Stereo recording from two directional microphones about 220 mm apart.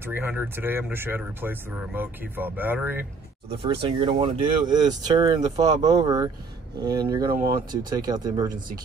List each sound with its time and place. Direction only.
0.0 s speech: 10° right (ahead or behind)
3.4 s speech: 25° right (ahead or behind)